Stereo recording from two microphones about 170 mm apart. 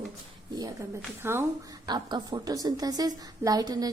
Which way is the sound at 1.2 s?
15° right (ahead or behind).